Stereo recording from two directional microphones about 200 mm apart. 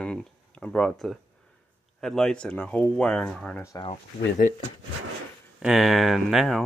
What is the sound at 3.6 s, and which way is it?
Speech, 25° left (ahead or behind).